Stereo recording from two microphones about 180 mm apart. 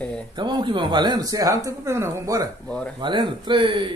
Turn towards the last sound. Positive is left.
turn(degrees=-30)  # may be behind; listen again after turning